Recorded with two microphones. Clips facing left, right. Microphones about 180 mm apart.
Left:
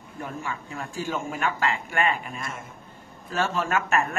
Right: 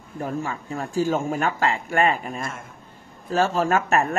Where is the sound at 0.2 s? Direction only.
40° right (ahead or behind).